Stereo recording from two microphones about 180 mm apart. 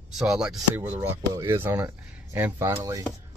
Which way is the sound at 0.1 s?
Centre (ahead or behind).